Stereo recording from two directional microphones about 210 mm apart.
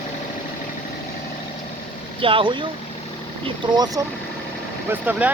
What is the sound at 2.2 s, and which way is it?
Speech, 25° right (ahead or behind).